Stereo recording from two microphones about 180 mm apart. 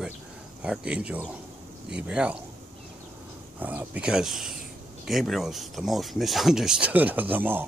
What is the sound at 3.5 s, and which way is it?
Speech, 10° right (ahead or behind).